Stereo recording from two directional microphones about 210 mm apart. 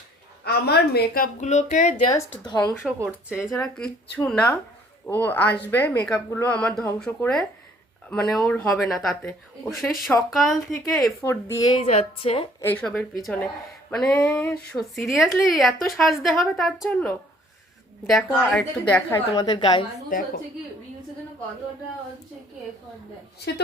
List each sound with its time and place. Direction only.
0.4 s a woman's voice: 50° left (ahead or behind)
2.0 s speech: 15° left (ahead or behind)
3.0 s speech: 5° right (ahead or behind)
11.2 s speech: 10° left (ahead or behind); by 12.5 s 30° left (ahead or behind)
12.6 s speech: 5° left (ahead or behind)
19.3 s speech: 20° left (ahead or behind)
20.1 s a woman's voice: 40° left (ahead or behind)